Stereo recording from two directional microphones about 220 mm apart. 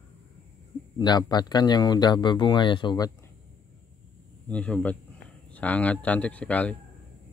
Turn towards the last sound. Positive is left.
turn(degrees=5)  # may be behind; listen again after turning